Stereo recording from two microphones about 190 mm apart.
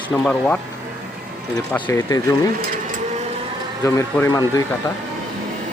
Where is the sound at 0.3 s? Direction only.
5° left (ahead or behind).